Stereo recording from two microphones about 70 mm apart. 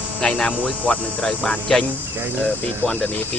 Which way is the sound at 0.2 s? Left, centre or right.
Centre.